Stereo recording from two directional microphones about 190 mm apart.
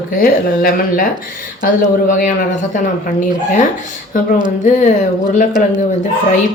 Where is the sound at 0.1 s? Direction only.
50° left (ahead or behind).